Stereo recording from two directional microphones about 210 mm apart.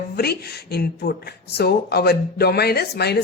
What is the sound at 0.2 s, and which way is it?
A man's voice, 50° left (ahead or behind).